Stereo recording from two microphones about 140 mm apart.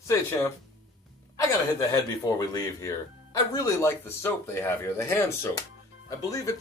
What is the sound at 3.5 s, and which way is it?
Speech, 20° left (ahead or behind).